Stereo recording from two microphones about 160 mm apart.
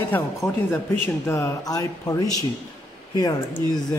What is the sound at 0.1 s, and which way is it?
Speech, 10° left (ahead or behind).